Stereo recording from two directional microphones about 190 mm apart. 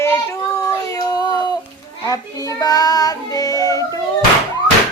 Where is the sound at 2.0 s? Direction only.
20° left (ahead or behind).